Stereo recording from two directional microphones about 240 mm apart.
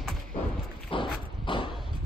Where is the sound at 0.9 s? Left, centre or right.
Left.